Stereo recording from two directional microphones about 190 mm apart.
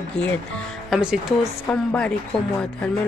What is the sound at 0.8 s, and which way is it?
Speech, 5° right (ahead or behind).